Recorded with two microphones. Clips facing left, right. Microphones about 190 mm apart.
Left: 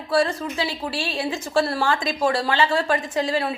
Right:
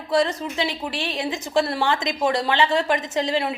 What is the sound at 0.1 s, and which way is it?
A woman's voice, 20° right (ahead or behind).